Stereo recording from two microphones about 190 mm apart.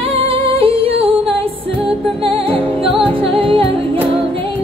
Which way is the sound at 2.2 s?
30° right (ahead or behind).